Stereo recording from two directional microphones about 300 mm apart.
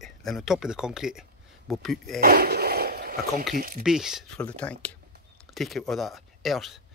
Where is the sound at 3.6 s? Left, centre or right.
Right.